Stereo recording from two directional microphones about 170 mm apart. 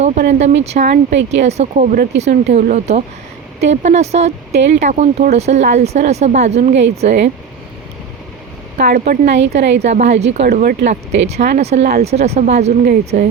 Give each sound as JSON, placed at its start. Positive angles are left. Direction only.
{"t": 0.0, "sound": "speech", "side_deg": -45}
{"t": 8.8, "sound": "a woman's voice", "side_deg": -65}
{"t": 9.6, "sound": "speech", "side_deg": -45}
{"t": 10.4, "sound": "speech", "side_deg": -55}
{"t": 11.6, "sound": "speech", "side_deg": -40}